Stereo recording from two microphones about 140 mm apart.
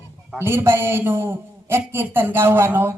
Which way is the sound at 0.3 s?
15° right (ahead or behind).